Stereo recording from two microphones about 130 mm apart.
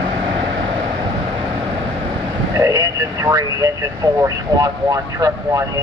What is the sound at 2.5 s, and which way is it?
Speech, 25° right (ahead or behind).